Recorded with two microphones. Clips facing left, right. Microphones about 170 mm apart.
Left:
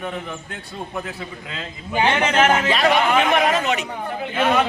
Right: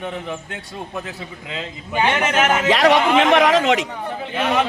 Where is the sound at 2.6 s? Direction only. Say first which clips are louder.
Right 3 dB; 90° right.